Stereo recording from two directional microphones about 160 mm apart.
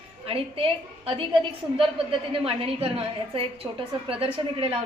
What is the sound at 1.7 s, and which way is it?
A woman's voice, 35° right (ahead or behind).